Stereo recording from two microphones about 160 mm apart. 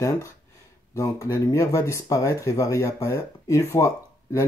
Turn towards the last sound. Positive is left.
turn(degrees=20)  # may be behind; listen again after turning